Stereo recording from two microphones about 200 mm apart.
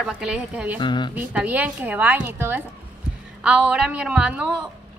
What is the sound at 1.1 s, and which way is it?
Speech, 5° right (ahead or behind).